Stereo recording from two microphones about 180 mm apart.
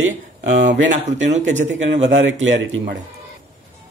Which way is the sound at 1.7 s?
80° right.